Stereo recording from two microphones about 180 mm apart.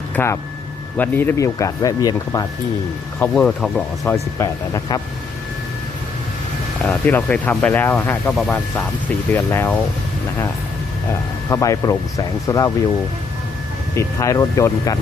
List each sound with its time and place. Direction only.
0.2 s speech: 10° left (ahead or behind)
3.2 s speech: 5° left (ahead or behind)
4.1 s speech: 15° left (ahead or behind)
6.8 s speech: 10° left (ahead or behind)
11.4 s speech: 15° left (ahead or behind)
13.9 s speech: 15° left (ahead or behind)